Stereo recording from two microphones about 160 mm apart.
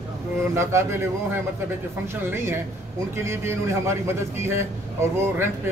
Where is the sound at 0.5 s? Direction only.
15° right (ahead or behind).